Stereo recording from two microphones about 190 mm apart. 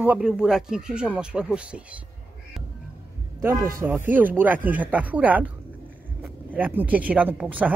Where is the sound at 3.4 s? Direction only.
15° right (ahead or behind).